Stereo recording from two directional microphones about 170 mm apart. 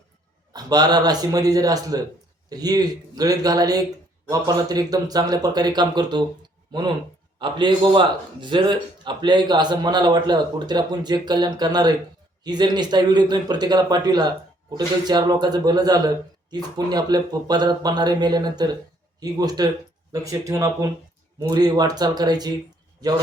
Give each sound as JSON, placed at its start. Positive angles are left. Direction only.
{"t": 0.5, "sound": "a man's voice", "side_deg": -25}
{"t": 7.3, "sound": "a man's voice", "side_deg": -30}